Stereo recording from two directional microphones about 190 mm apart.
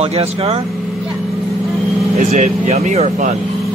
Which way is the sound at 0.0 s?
30° right (ahead or behind).